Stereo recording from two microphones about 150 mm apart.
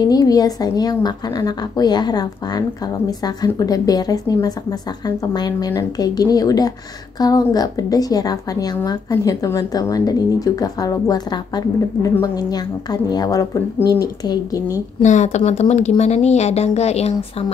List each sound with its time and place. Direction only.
0.0 s speech: 25° left (ahead or behind)
15.0 s a woman's voice: 50° left (ahead or behind)